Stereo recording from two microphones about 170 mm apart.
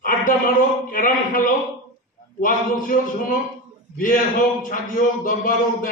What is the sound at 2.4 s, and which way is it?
A man's voice, 55° left (ahead or behind).